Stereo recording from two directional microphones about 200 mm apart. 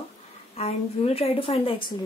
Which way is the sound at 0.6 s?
30° left (ahead or behind).